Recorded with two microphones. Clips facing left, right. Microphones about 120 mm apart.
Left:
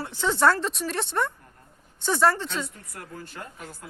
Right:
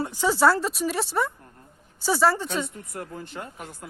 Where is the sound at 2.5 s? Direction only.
25° right (ahead or behind).